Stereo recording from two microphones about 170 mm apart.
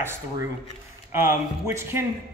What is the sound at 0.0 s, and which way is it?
Speech, 15° right (ahead or behind).